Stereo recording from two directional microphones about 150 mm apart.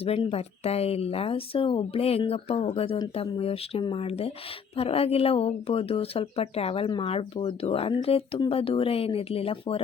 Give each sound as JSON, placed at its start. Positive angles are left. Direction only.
{"t": 0.0, "sound": "speech", "side_deg": 40}